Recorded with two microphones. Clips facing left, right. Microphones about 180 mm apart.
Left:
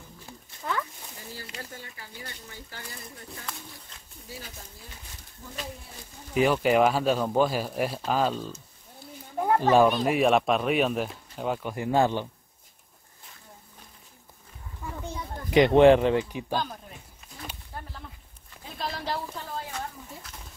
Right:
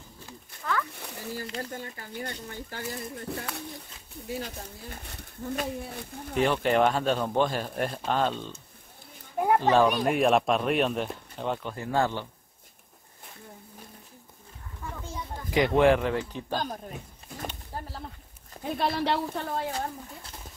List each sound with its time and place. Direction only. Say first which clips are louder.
1.0 s a sound: right 6 dB; 65° right (ahead or behind)
1.3 s speech: right 7 dB; 50° right (ahead or behind)
6.3 s speech: left 2 dB; 5° left (ahead or behind)
9.6 s speech: left 3 dB; 10° left (ahead or behind)
10.0 s speech: left 1 dB; centre (ahead or behind)
15.0 s children playing: left 2 dB; 20° left (ahead or behind)
16.3 s speech: left 2 dB; 10° left (ahead or behind)
16.5 s speech: left 1 dB; 45° right (ahead or behind)
17.7 s a sound: right 2 dB; 40° right (ahead or behind)
18.6 s speech: right 7 dB; 65° right (ahead or behind)
19.7 s speech: right 3 dB; 30° right (ahead or behind)